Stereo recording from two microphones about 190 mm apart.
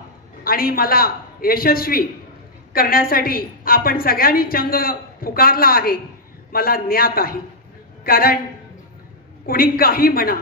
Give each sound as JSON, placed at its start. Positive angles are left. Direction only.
{"t": 0.4, "sound": "a woman's voice", "side_deg": 50}
{"t": 9.5, "sound": "a woman's voice", "side_deg": 50}